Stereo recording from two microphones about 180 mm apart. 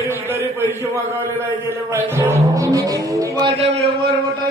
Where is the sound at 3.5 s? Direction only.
35° right (ahead or behind).